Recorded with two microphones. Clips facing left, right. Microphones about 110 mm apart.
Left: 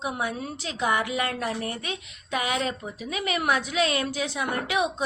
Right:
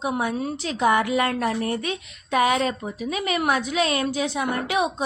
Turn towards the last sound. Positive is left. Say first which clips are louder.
# right 3 dB
turn(degrees=-35)  # may be behind; listen again after turning